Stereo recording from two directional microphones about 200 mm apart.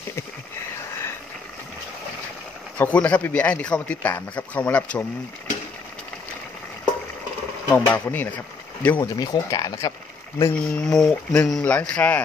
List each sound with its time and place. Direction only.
2.8 s speech: 5° left (ahead or behind)
7.7 s speech: 10° left (ahead or behind)
10.5 s speech: 5° left (ahead or behind)